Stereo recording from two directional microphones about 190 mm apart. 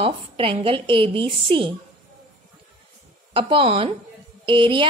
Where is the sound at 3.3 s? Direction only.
30° right (ahead or behind).